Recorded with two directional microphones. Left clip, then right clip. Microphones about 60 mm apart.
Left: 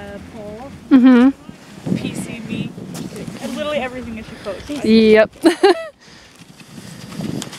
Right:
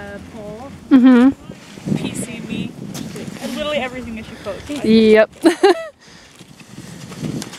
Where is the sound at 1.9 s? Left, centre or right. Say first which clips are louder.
Right 1 dB; right.